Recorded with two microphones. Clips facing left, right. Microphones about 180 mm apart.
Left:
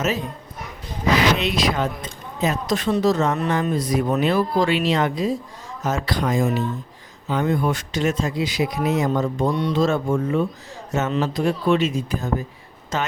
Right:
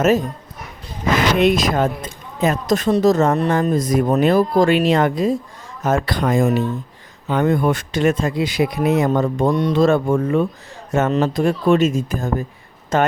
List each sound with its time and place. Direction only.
0.0 s speech: 50° right (ahead or behind)